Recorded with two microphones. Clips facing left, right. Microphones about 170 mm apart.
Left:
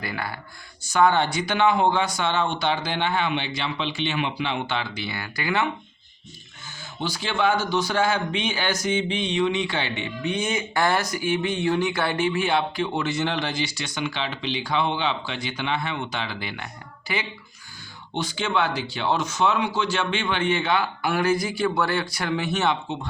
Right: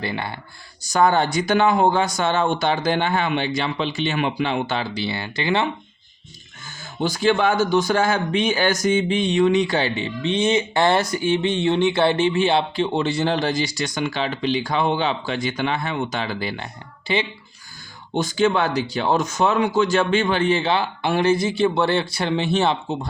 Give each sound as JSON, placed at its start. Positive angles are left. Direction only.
{"t": 0.0, "sound": "speech", "side_deg": -25}
{"t": 0.8, "sound": "speech", "side_deg": -40}
{"t": 7.0, "sound": "speech", "side_deg": -45}
{"t": 18.1, "sound": "speech", "side_deg": -45}